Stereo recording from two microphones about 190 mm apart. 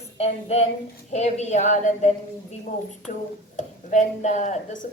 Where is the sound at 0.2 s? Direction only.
35° left (ahead or behind).